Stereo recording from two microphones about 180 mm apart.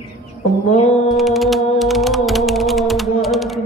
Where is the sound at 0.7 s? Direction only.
35° left (ahead or behind).